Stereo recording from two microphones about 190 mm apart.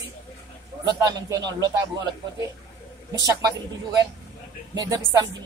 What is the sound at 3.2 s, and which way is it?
Speech, 20° right (ahead or behind).